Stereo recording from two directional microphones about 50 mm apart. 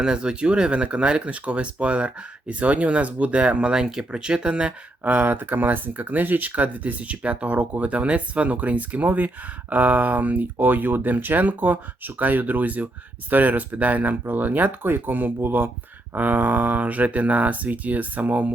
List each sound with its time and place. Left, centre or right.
0.0 s speech: centre
5.0 s speech: right